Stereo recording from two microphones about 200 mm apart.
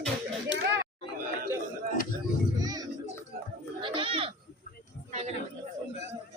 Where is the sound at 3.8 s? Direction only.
25° right (ahead or behind).